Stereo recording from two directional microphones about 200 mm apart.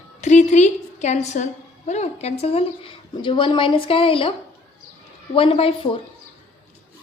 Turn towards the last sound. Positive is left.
turn(degrees=25)  # may be behind; listen again after turning